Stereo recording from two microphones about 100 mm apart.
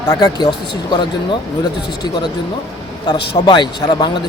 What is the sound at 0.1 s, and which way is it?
A man's voice, 40° left (ahead or behind).